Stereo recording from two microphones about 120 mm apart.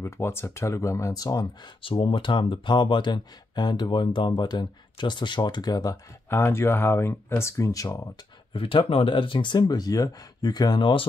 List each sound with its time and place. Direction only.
0.0 s speech: 20° left (ahead or behind)
1.8 s speech: 45° left (ahead or behind)
6.3 s speech: 20° left (ahead or behind)
8.5 s speech: 45° left (ahead or behind)